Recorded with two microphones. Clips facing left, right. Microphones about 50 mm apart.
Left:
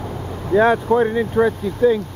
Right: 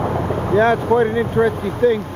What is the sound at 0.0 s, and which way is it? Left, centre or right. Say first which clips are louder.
Boat: right 9 dB; right.